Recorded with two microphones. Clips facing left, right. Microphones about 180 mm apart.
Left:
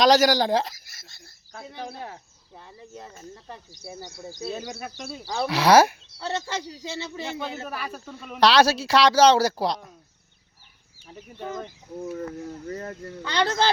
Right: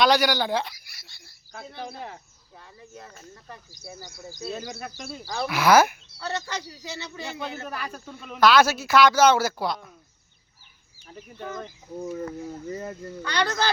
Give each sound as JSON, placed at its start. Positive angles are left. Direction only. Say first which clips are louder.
{"t": 0.0, "sound": "speech", "louder": "left 3 dB", "side_deg": 40}
{"t": 1.8, "sound": "speech", "louder": "left 1 dB", "side_deg": 0}
{"t": 2.9, "sound": "speech", "louder": "left 4 dB", "side_deg": 25}
{"t": 4.4, "sound": "speech", "louder": "left 1 dB", "side_deg": 5}
{"t": 5.2, "sound": "speech", "louder": "left 1 dB", "side_deg": 25}
{"t": 7.6, "sound": "speech", "louder": "left 1 dB", "side_deg": 5}
{"t": 8.4, "sound": "speech", "louder": "even", "side_deg": 35}
{"t": 11.1, "sound": "speech", "louder": "left 2 dB", "side_deg": 5}
{"t": 13.2, "sound": "speech", "louder": "left 3 dB", "side_deg": 25}